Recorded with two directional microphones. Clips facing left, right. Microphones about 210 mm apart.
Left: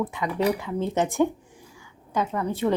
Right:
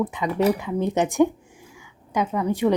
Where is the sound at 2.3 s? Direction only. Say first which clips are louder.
Right 5 dB; 10° right (ahead or behind).